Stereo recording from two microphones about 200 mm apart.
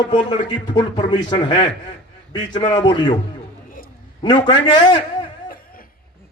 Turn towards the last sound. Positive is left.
turn(degrees=25)  # may be behind; listen again after turning